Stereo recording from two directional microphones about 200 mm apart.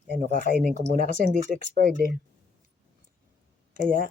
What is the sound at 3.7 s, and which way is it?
Speech, 45° right (ahead or behind).